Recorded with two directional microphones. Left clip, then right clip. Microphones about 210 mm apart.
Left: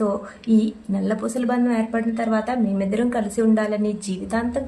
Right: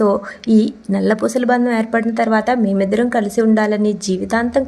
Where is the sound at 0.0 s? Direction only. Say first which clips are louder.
Right 8 dB; 35° right (ahead or behind).